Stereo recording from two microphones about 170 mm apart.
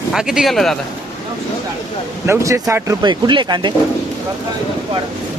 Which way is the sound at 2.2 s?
15° right (ahead or behind).